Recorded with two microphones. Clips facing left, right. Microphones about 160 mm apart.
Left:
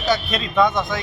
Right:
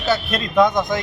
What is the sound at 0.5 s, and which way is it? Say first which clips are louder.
Speech: right 3 dB; 15° right (ahead or behind).